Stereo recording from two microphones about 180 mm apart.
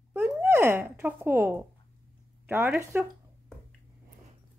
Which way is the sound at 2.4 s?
10° right (ahead or behind).